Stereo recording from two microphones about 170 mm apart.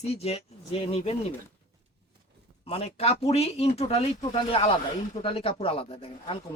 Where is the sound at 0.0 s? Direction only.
35° left (ahead or behind).